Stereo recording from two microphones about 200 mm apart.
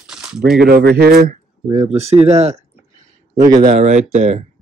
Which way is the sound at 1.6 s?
30° right (ahead or behind).